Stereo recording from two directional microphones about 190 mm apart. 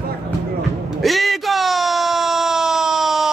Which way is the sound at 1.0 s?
Centre (ahead or behind).